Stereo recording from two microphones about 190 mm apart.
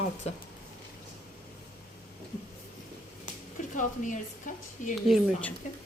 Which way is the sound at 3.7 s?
45° left (ahead or behind).